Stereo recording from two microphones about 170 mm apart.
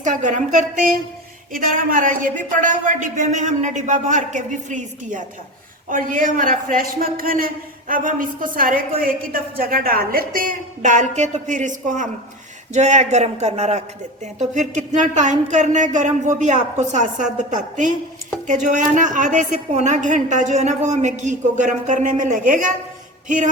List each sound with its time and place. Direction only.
0.0 s speech: 45° right (ahead or behind)
1.5 s a woman's voice: 55° right (ahead or behind)